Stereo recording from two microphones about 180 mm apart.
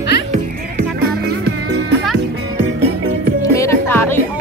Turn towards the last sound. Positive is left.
turn(degrees=10)  # may be behind; listen again after turning